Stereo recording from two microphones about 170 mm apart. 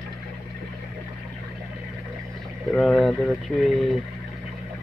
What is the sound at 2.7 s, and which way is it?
Speech, 5° left (ahead or behind).